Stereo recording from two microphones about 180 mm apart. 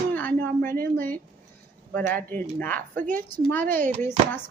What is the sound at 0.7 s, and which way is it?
Speech, 55° right (ahead or behind).